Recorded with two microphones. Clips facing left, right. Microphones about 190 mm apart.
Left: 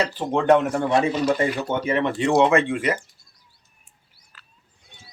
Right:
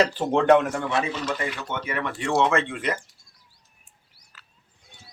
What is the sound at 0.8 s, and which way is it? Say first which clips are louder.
A man's voice: left 6 dB; 45° left (ahead or behind).